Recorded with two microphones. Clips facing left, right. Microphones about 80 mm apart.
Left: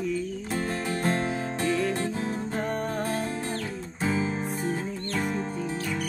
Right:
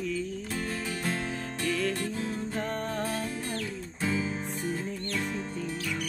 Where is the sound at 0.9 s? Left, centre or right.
Left.